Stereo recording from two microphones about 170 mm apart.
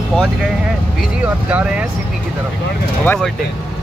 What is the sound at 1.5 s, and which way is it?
Speech, 5° right (ahead or behind).